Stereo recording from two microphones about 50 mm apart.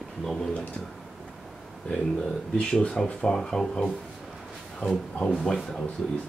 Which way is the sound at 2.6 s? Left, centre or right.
Centre.